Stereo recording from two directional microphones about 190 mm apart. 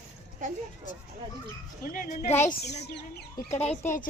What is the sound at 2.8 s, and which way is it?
Speech, 60° left (ahead or behind).